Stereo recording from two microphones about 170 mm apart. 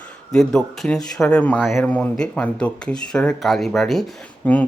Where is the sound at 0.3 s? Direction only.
5° left (ahead or behind).